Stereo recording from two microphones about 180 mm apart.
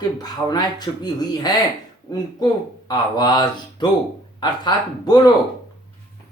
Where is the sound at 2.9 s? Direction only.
25° left (ahead or behind).